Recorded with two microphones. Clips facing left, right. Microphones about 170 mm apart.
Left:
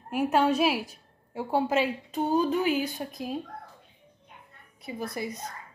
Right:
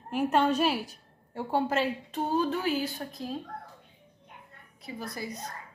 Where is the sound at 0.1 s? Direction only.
5° left (ahead or behind).